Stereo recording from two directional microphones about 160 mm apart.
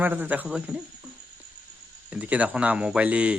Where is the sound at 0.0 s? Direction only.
10° right (ahead or behind).